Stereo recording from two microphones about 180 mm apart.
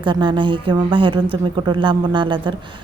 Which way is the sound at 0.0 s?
25° right (ahead or behind).